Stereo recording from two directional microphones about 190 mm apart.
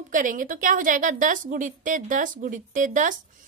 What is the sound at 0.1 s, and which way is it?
A woman's voice, 45° right (ahead or behind).